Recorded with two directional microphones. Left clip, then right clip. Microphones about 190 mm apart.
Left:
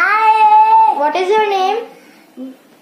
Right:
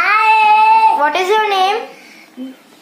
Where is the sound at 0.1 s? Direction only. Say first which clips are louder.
Right 1 dB; centre (ahead or behind).